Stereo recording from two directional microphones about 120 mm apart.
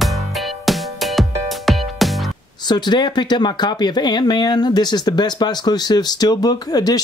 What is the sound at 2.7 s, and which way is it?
Speech, 35° left (ahead or behind).